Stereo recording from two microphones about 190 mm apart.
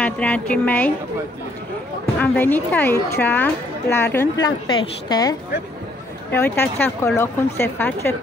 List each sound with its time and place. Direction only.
0.0 s a woman's voice: 5° left (ahead or behind)
2.1 s a woman's voice: 10° left (ahead or behind)
6.3 s a woman's voice: 10° left (ahead or behind)